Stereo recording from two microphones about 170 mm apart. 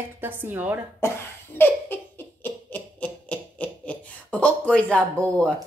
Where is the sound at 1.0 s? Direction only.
15° left (ahead or behind).